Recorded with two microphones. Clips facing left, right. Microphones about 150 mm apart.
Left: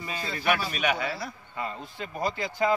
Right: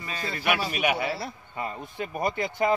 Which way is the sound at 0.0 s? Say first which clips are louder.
Even; 5° left (ahead or behind).